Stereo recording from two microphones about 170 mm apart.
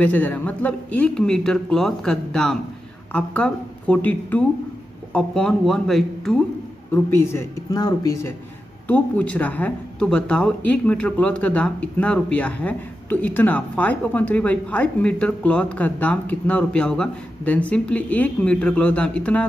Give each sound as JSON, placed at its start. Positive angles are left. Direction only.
{"t": 0.0, "sound": "speech", "side_deg": 10}
{"t": 6.9, "sound": "speech", "side_deg": 20}
{"t": 8.8, "sound": "speech", "side_deg": 10}